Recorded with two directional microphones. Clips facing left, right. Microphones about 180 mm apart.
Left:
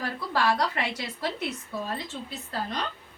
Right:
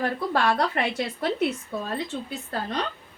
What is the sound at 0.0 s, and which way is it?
A woman's voice, 55° right (ahead or behind).